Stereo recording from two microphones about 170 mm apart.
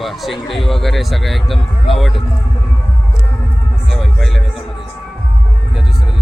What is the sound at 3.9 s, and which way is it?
Music, centre (ahead or behind).